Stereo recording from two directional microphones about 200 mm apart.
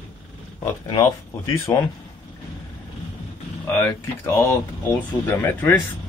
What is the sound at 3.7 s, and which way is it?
Speech, 10° left (ahead or behind).